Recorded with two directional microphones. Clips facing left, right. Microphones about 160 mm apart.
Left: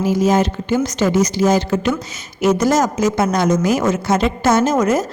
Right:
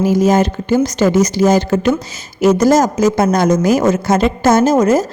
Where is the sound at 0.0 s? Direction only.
45° right (ahead or behind).